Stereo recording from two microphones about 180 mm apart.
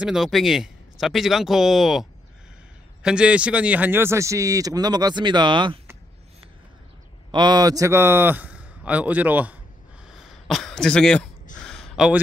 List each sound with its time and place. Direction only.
0.0 s speech: centre (ahead or behind); by 5.8 s 25° right (ahead or behind)
7.2 s speech: 25° right (ahead or behind); by 9.6 s 10° right (ahead or behind)
10.0 s a sound: centre (ahead or behind)